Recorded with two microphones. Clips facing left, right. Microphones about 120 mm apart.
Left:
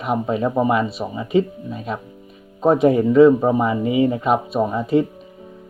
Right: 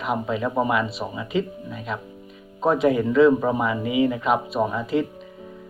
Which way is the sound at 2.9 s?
40° left (ahead or behind).